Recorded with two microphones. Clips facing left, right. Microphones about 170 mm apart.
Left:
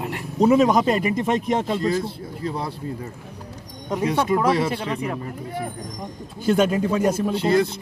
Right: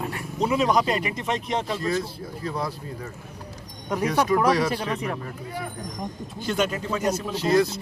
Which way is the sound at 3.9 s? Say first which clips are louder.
Left 1 dB; 25° left (ahead or behind).